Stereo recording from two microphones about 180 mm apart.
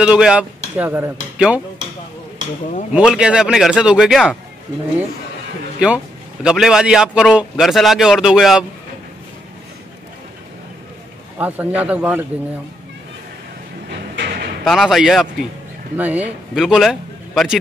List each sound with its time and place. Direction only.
0.0 s speech: 5° right (ahead or behind)
2.9 s a man's voice: 5° right (ahead or behind)
5.8 s a man's voice: 5° right (ahead or behind)
11.3 s a man's voice: 10° right (ahead or behind)
14.1 s a sound: 60° right (ahead or behind)
14.6 s a man's voice: centre (ahead or behind)